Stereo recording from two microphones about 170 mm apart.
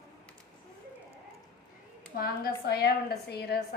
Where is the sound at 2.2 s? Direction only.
65° left (ahead or behind).